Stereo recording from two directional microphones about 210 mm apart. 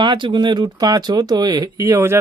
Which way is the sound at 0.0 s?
20° right (ahead or behind).